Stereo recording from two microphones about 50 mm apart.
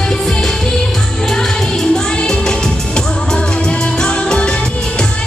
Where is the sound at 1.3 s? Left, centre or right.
Centre.